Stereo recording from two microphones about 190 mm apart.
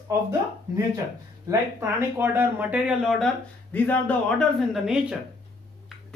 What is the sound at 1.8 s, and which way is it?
Speech, 10° right (ahead or behind).